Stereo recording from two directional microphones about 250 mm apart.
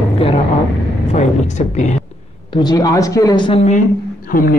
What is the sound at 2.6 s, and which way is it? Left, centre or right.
Speech, centre.